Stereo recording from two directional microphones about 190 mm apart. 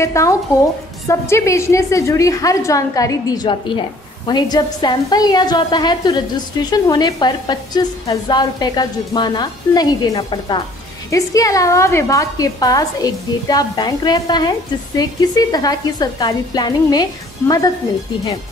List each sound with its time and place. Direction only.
0.0 s a woman's voice: 15° left (ahead or behind)